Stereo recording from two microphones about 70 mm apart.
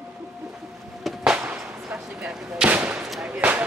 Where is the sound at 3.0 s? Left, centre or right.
Centre.